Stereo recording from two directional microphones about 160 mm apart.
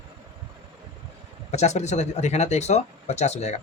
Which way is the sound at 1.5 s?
45° left (ahead or behind).